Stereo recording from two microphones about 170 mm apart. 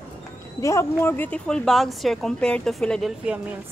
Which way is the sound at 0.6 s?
15° left (ahead or behind).